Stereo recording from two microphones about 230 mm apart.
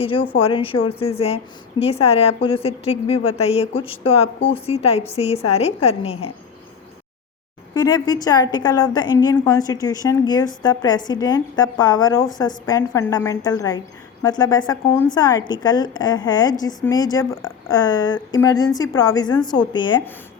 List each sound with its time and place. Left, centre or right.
0.0 s a woman's voice: left
7.7 s a woman's voice: centre